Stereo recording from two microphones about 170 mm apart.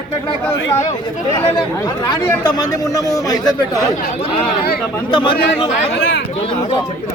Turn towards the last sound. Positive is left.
turn(degrees=30)  # may be behind; listen again after turning